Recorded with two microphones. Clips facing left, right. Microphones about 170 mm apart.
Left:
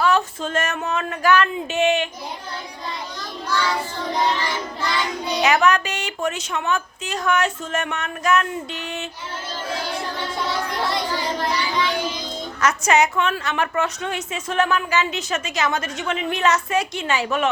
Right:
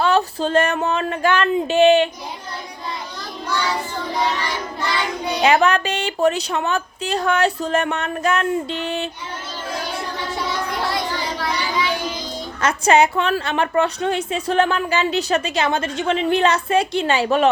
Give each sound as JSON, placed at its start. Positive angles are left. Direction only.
{"t": 0.0, "sound": "speech", "side_deg": -35}
{"t": 1.5, "sound": "a sound", "side_deg": -30}
{"t": 5.4, "sound": "a woman's voice", "side_deg": -30}
{"t": 12.6, "sound": "a woman's voice", "side_deg": -30}